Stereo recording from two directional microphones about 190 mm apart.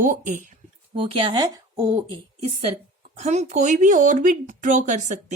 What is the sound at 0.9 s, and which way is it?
Speech, 30° right (ahead or behind).